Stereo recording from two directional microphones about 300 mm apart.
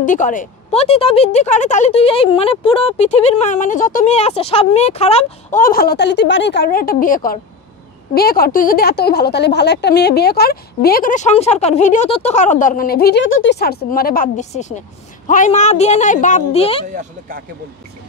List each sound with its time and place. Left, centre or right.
0.0 s a woman's voice: left